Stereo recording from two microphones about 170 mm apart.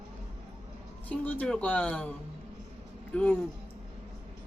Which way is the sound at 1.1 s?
10° left (ahead or behind).